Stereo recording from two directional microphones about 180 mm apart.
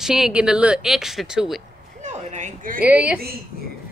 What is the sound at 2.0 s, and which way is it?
Speech, 40° right (ahead or behind).